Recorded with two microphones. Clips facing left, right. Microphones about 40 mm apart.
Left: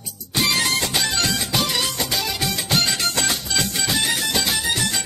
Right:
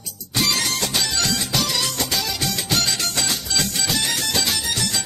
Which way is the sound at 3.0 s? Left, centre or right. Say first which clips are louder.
Left 2 dB; left.